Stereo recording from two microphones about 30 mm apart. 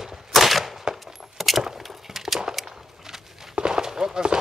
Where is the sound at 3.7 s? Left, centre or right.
Right.